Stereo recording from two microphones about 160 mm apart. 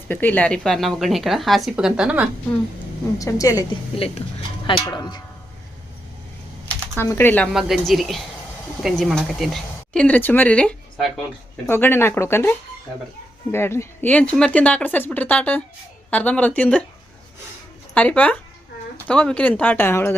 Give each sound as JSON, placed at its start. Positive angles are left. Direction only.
{"t": 0.1, "sound": "speech", "side_deg": 10}
{"t": 3.2, "sound": "speech", "side_deg": 20}
{"t": 3.9, "sound": "speech", "side_deg": 35}
{"t": 4.6, "sound": "speech", "side_deg": 25}
{"t": 6.9, "sound": "a woman's voice", "side_deg": 15}
{"t": 7.5, "sound": "a woman's voice", "side_deg": 0}
{"t": 17.9, "sound": "a woman's voice", "side_deg": 10}